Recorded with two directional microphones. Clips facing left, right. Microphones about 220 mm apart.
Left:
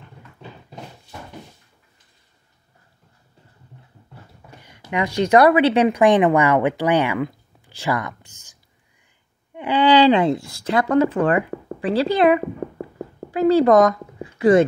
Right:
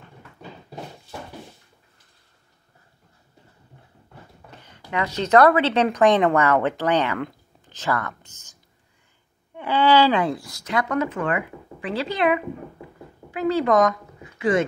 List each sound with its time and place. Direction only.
4.5 s a woman's voice: 10° left (ahead or behind); by 14.7 s 40° left (ahead or behind)